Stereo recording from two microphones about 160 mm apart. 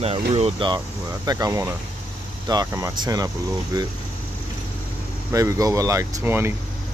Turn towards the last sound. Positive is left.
turn(degrees=-15)  # may be behind; listen again after turning